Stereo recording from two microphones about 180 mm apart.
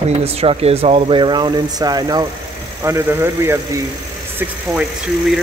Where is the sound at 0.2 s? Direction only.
35° right (ahead or behind); by 3.8 s 15° right (ahead or behind).